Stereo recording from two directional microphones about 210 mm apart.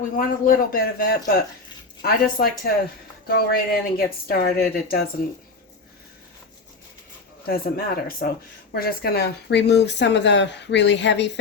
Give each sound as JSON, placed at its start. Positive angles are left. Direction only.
{"t": 0.2, "sound": "speech", "side_deg": 40}
{"t": 7.4, "sound": "speech", "side_deg": 45}